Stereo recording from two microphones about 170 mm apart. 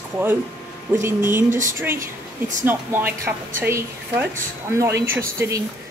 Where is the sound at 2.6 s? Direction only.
10° right (ahead or behind).